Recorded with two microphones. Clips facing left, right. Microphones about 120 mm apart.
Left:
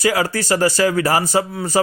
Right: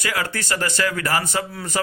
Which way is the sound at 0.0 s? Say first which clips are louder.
Left 8 dB; 35° left (ahead or behind).